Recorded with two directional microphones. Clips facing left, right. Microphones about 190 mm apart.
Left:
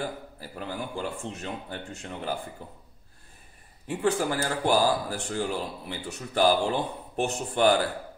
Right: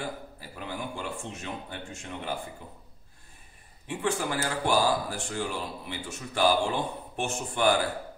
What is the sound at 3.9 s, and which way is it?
A man's voice, 40° left (ahead or behind).